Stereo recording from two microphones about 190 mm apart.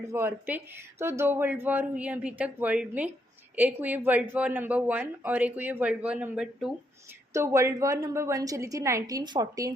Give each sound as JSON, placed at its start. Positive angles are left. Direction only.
{"t": 0.1, "sound": "speech", "side_deg": -10}
{"t": 7.3, "sound": "speech", "side_deg": -15}